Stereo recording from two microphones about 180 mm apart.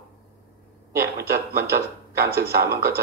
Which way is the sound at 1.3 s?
15° right (ahead or behind).